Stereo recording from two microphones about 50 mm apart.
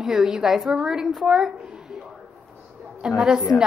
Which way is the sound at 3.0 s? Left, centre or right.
Centre.